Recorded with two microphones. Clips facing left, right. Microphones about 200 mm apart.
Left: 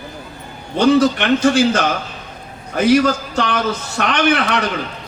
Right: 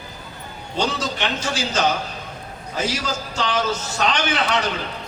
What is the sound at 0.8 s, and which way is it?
A man's voice, 60° left (ahead or behind).